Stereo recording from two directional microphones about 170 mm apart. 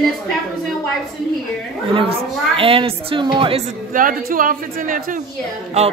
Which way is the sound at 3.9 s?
55° right (ahead or behind).